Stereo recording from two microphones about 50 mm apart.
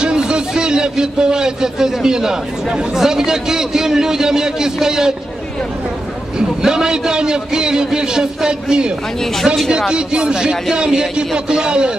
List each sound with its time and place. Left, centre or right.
0.0 s speech: centre
6.6 s speech: centre